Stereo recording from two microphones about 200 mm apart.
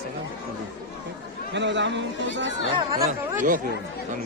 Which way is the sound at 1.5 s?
65° right (ahead or behind).